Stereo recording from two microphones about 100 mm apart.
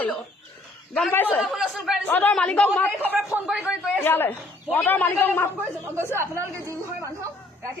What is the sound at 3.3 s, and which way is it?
Speech, 10° right (ahead or behind).